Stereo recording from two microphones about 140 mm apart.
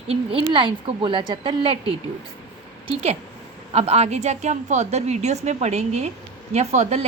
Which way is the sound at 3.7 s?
50° right (ahead or behind).